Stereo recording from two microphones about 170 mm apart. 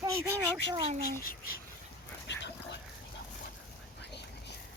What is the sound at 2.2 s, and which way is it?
Dog, 90° left.